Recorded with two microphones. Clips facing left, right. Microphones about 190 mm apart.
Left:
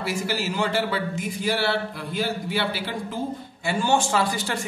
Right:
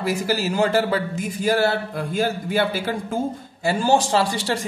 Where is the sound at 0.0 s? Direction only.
40° right (ahead or behind).